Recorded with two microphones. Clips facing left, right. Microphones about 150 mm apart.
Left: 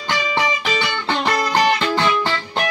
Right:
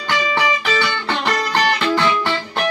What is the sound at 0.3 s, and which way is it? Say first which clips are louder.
Music: right 1 dB; 20° left (ahead or behind).